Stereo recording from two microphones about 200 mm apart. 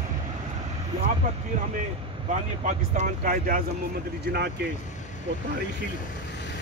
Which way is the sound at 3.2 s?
45° right (ahead or behind).